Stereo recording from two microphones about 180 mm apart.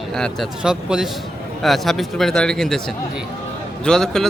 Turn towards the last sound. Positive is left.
turn(degrees=5)  # may be behind; listen again after turning